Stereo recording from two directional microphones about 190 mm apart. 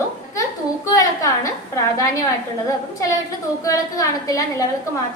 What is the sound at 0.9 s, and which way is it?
Speech, 15° left (ahead or behind).